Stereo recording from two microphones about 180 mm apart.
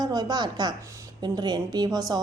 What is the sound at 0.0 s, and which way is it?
A woman's voice, 20° right (ahead or behind).